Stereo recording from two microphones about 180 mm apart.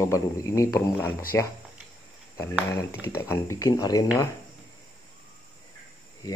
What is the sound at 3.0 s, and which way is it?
Speech, 15° left (ahead or behind).